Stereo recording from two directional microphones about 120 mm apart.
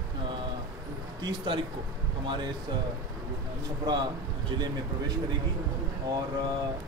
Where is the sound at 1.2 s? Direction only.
45° right (ahead or behind).